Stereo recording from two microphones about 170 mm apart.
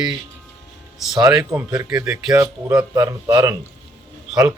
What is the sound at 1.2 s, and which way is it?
Speech, 5° right (ahead or behind).